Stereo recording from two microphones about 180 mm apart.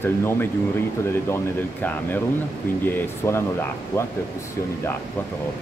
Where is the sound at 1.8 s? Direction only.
10° left (ahead or behind).